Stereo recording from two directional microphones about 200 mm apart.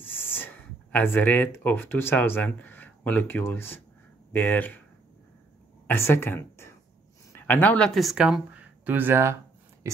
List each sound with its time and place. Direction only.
0.0 s speech: 10° left (ahead or behind)
5.9 s speech: 10° left (ahead or behind); by 9.4 s 10° right (ahead or behind)